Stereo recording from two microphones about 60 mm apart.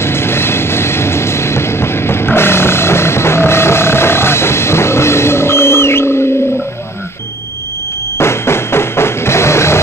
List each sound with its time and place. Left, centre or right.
0.0 s train: left
8.2 s music: left